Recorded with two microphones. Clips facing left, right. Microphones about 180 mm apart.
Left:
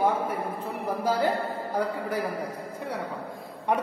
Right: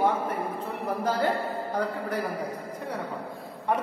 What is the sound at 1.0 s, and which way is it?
Speech, 10° left (ahead or behind).